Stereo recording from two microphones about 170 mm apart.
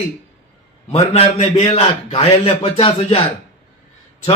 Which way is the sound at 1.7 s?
35° left (ahead or behind).